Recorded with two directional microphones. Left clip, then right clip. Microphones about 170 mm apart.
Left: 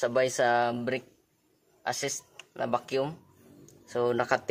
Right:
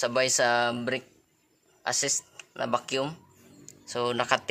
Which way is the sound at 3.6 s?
25° left (ahead or behind).